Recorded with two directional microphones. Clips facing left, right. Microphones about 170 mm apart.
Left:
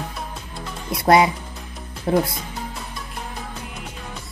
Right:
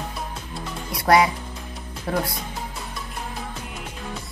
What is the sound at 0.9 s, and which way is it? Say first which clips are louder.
Speech: left 2 dB; 25° left (ahead or behind).